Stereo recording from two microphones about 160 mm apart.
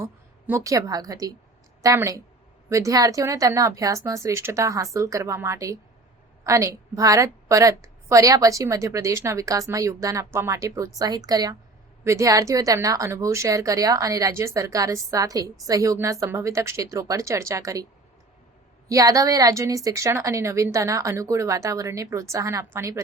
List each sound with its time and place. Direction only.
0.0 s a woman's voice: 15° right (ahead or behind)
18.9 s a woman's voice: 20° right (ahead or behind)